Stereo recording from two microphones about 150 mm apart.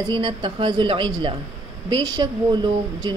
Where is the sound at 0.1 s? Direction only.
35° right (ahead or behind).